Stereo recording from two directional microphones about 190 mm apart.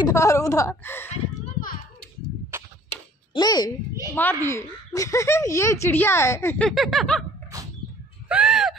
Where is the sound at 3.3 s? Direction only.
20° left (ahead or behind).